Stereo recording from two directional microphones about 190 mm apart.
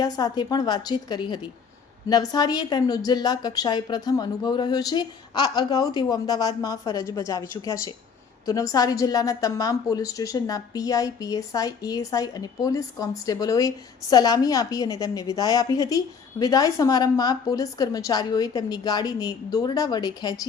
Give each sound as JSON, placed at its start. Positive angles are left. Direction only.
{"t": 0.0, "sound": "a woman's voice", "side_deg": 20}